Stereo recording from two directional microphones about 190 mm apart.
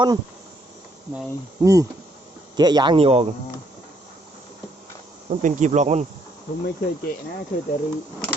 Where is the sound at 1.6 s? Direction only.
20° right (ahead or behind).